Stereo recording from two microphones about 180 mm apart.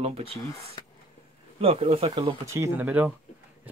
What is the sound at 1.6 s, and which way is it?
Speech, 30° right (ahead or behind).